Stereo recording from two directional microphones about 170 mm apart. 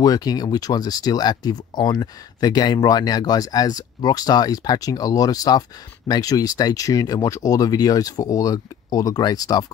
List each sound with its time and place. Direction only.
0.0 s speech: 20° left (ahead or behind)